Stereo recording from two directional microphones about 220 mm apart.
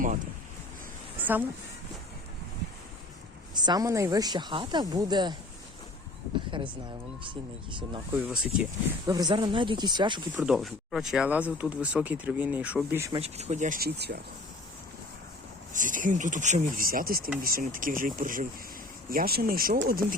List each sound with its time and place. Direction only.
1.2 s speech: 10° right (ahead or behind)
3.5 s speech: 20° right (ahead or behind)
6.5 s a sound: 20° right (ahead or behind)
7.3 s speech: 20° right (ahead or behind)
8.1 s speech: 10° right (ahead or behind)
10.3 s speech: centre (ahead or behind)
13.1 s speech: 30° right (ahead or behind); by 14.2 s 45° right (ahead or behind)
15.7 s speech: 35° right (ahead or behind)